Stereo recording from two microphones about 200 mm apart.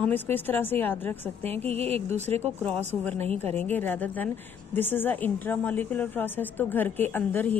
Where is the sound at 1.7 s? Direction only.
30° right (ahead or behind).